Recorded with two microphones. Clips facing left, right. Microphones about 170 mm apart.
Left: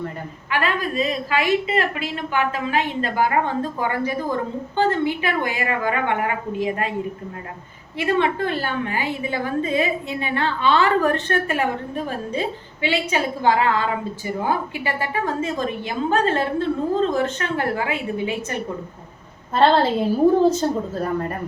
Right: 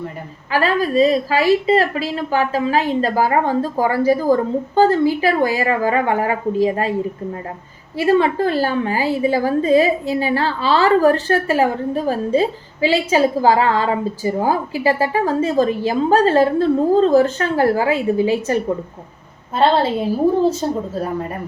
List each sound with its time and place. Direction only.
0.5 s a woman's voice: 35° right (ahead or behind)
7.9 s a woman's voice: 35° right (ahead or behind)
19.5 s a woman's voice: 5° right (ahead or behind)